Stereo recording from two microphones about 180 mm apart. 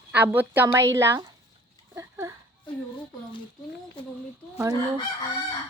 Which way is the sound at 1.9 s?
15° right (ahead or behind).